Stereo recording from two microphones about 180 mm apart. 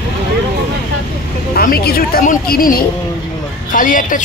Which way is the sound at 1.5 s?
55° left (ahead or behind).